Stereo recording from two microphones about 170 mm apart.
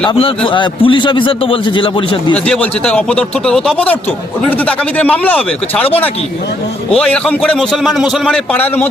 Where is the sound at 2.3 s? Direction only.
5° left (ahead or behind).